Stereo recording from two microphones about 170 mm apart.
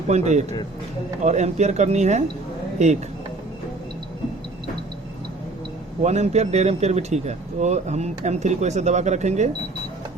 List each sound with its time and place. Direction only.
0.1 s speech: 40° right (ahead or behind)
6.0 s speech: 40° right (ahead or behind)